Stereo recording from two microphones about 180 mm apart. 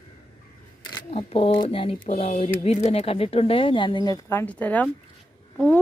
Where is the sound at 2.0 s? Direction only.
45° left (ahead or behind).